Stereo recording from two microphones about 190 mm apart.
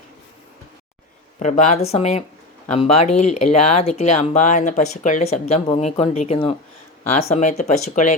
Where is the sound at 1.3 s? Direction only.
40° left (ahead or behind).